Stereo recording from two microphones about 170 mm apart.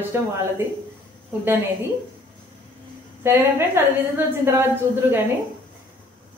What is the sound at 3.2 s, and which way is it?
Speech, 15° right (ahead or behind).